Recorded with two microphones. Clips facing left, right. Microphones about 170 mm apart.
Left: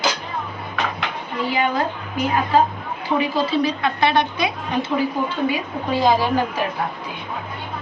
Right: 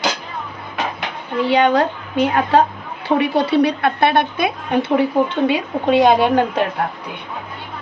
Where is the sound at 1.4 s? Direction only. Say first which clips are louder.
Right 6 dB; 70° right (ahead or behind).